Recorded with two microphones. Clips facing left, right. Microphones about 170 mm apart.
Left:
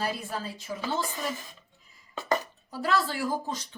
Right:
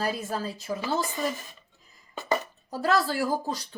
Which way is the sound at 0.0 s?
40° right (ahead or behind).